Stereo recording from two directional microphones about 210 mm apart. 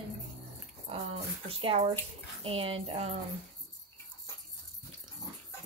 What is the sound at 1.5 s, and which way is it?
A woman's voice, 25° right (ahead or behind).